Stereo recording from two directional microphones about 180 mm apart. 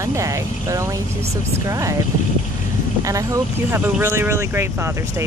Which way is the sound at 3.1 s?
20° right (ahead or behind).